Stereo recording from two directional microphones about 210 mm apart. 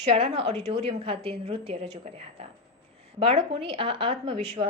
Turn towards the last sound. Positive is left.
turn(degrees=-25)  # may be behind; listen again after turning